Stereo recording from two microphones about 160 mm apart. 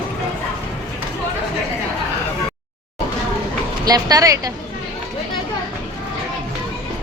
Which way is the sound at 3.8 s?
25° right (ahead or behind).